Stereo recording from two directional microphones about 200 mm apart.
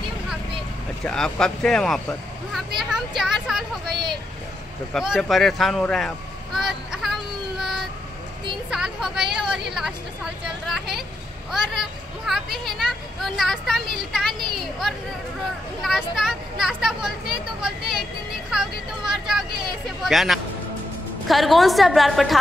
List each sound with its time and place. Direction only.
1.0 s speech: 5° left (ahead or behind)
3.9 s speech: 25° right (ahead or behind)
4.9 s speech: centre (ahead or behind)
7.5 s vehicle: 5° right (ahead or behind)
8.6 s speech: 5° right (ahead or behind)